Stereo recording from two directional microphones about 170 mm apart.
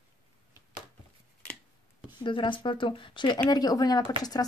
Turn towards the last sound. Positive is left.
turn(degrees=20)  # may be behind; listen again after turning